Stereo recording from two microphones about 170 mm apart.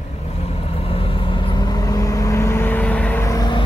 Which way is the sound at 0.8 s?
30° left (ahead or behind).